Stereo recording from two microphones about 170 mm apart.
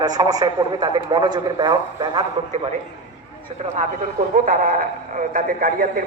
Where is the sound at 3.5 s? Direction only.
40° right (ahead or behind).